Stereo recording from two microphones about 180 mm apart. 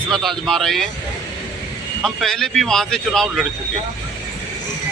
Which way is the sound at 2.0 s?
Centre (ahead or behind).